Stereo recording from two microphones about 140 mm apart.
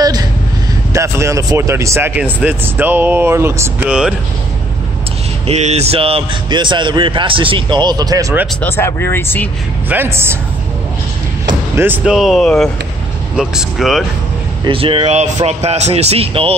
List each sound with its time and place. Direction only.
0.0 s a sound: 25° right (ahead or behind)
0.9 s speech: 20° right (ahead or behind)
5.5 s a man's voice: 50° right (ahead or behind); by 8.4 s 25° right (ahead or behind)
8.5 s speech: 15° left (ahead or behind)
9.8 s speech: 15° right (ahead or behind)
11.7 s speech: 15° right (ahead or behind)
12.0 s speech: centre (ahead or behind)
14.6 s a man's voice: 40° right (ahead or behind)